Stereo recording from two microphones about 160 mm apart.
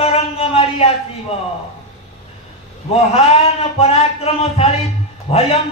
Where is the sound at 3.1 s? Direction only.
40° left (ahead or behind).